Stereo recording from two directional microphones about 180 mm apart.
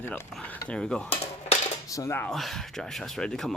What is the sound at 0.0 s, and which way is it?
Speech, 10° left (ahead or behind).